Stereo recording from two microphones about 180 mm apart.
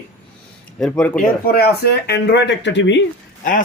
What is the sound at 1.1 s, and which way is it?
Speech, 60° left (ahead or behind).